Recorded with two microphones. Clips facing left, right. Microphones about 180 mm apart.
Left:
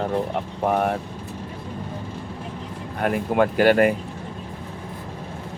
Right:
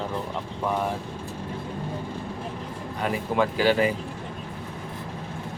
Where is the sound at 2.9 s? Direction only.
55° left (ahead or behind).